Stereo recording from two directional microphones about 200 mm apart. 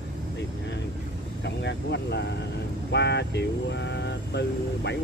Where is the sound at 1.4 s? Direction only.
60° left (ahead or behind).